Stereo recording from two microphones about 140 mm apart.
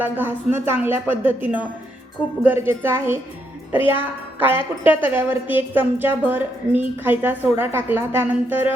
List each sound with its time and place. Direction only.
0.0 s a woman's voice: 15° right (ahead or behind)